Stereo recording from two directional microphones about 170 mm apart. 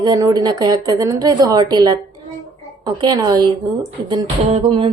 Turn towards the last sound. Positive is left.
turn(degrees=-30)  # may be behind; listen again after turning